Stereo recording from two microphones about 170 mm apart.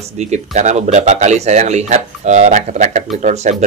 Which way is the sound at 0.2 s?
45° right (ahead or behind).